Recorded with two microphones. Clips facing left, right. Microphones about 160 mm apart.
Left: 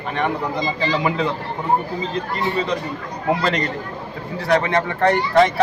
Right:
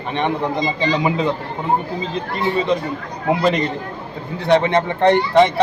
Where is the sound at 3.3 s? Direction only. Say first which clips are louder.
Right 3 dB; 20° right (ahead or behind).